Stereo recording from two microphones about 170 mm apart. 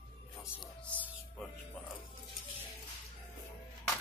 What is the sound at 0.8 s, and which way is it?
Music, 10° left (ahead or behind).